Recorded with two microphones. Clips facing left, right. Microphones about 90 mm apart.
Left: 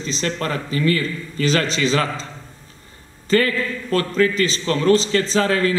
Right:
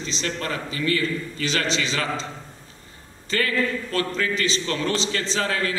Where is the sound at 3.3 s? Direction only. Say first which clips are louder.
Left 5 dB; 40° left (ahead or behind).